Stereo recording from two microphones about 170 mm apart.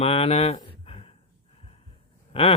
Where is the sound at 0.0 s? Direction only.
35° left (ahead or behind).